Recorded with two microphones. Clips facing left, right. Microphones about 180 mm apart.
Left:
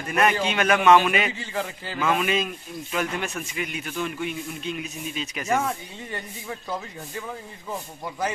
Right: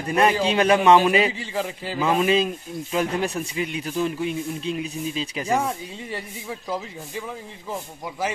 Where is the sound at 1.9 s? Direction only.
30° right (ahead or behind).